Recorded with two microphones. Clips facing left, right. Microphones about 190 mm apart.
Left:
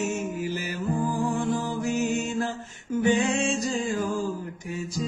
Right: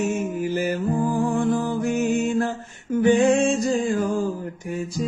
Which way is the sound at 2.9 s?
55° right (ahead or behind).